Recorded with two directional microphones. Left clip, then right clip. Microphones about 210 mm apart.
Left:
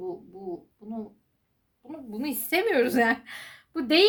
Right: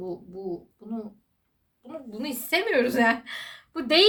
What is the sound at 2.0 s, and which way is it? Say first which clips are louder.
A woman's voice: right 1 dB; 40° left (ahead or behind).